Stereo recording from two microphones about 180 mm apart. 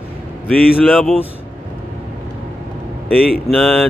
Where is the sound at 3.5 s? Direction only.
5° left (ahead or behind).